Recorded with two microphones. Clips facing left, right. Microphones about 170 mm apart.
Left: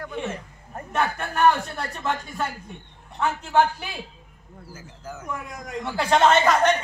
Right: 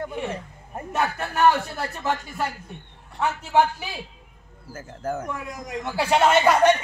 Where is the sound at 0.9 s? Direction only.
5° right (ahead or behind).